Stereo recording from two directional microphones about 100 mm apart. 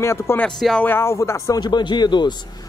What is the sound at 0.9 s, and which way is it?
Speech, 25° left (ahead or behind).